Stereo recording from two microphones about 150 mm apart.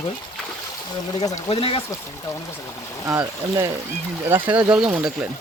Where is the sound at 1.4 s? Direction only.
40° left (ahead or behind).